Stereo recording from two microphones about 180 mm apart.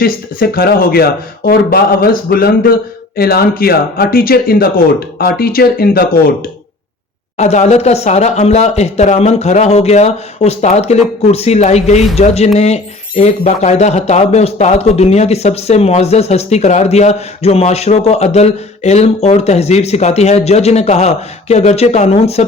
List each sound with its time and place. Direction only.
0.0 s speech: 55° left (ahead or behind)
7.3 s speech: 40° left (ahead or behind)